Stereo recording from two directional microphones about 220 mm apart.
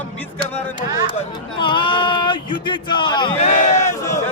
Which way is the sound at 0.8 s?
30° left (ahead or behind).